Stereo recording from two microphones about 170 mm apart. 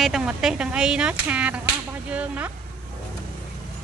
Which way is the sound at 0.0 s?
Centre (ahead or behind).